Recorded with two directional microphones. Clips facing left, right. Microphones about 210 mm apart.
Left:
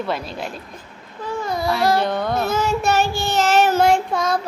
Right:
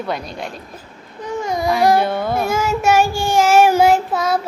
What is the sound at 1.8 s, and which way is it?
Child singing, 15° right (ahead or behind).